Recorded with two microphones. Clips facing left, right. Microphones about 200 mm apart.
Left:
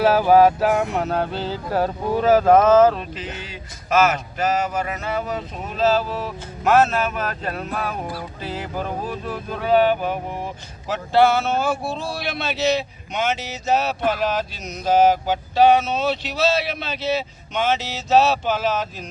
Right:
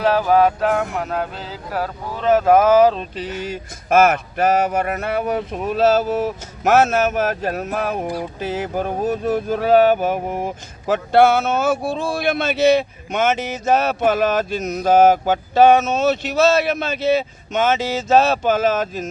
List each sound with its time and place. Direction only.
0.0 s speech: 10° left (ahead or behind)
0.8 s speech: 30° left (ahead or behind)
2.1 s speech: 5° left (ahead or behind)
2.4 s speech: 10° right (ahead or behind)
3.2 s speech: 45° right (ahead or behind)
6.9 s a sound: 45° right (ahead or behind)